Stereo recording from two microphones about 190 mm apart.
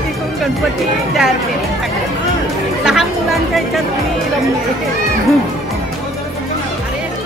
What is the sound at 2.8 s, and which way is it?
Speech, 5° right (ahead or behind).